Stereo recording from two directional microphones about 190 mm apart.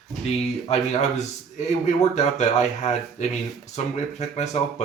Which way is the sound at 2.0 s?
35° left (ahead or behind).